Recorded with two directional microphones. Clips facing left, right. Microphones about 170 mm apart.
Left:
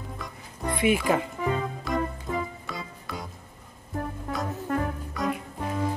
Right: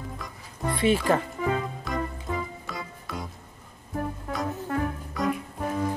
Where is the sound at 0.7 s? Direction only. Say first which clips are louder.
Right 1 dB; 15° left (ahead or behind).